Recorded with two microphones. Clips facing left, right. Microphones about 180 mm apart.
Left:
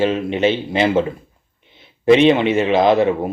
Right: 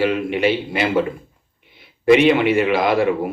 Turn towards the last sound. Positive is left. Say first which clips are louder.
# left 3 dB
turn(degrees=25)  # may be behind; listen again after turning